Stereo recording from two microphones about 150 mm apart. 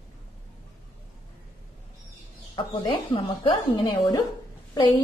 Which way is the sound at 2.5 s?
35° left (ahead or behind).